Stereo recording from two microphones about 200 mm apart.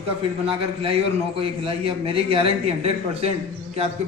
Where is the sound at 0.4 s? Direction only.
30° right (ahead or behind).